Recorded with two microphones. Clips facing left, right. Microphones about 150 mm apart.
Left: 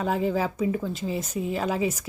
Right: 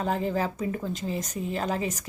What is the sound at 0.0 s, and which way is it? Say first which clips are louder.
Speech: left 2 dB; 5° left (ahead or behind).